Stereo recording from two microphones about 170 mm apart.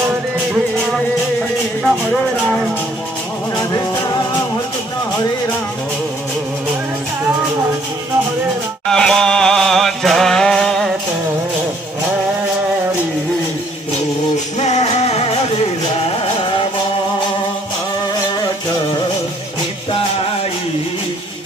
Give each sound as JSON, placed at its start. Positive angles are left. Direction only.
{"t": 3.5, "sound": "music", "side_deg": 20}
{"t": 8.8, "sound": "a sound", "side_deg": 5}
{"t": 14.6, "sound": "music", "side_deg": 40}